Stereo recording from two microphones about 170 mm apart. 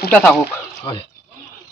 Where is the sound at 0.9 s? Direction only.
30° left (ahead or behind).